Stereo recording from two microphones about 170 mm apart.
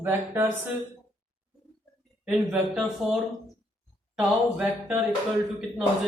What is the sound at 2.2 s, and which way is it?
Speech, 5° right (ahead or behind).